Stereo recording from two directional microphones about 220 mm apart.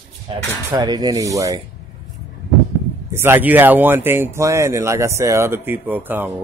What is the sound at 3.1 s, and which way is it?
Speech, 10° right (ahead or behind).